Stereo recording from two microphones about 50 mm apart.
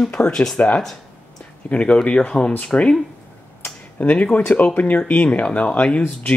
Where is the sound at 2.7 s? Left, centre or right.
Left.